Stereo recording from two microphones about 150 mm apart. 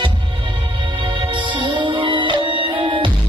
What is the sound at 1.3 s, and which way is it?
Music, 30° right (ahead or behind).